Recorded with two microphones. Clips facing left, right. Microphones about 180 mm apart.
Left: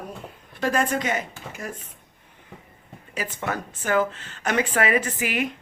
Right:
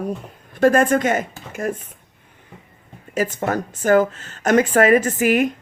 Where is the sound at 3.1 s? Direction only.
45° right (ahead or behind).